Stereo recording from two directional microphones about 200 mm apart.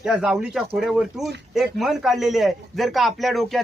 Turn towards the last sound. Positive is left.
turn(degrees=0)  # may be behind; listen again after turning